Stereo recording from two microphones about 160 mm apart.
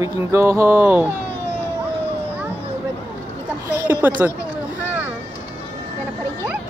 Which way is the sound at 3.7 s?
20° left (ahead or behind).